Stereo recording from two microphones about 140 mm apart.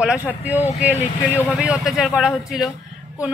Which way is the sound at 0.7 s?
50° left (ahead or behind).